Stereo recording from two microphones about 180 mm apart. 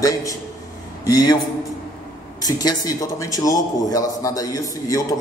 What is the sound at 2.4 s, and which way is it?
A man's voice, 20° left (ahead or behind).